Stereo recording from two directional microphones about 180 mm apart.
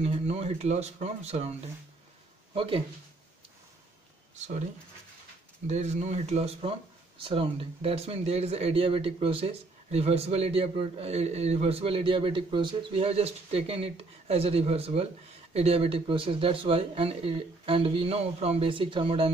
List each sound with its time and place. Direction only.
0.0 s speech: 35° right (ahead or behind)
4.4 s speech: 40° right (ahead or behind)
5.7 s speech: 40° right (ahead or behind)